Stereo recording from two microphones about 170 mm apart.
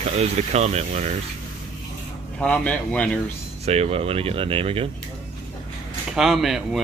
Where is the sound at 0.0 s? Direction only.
40° right (ahead or behind).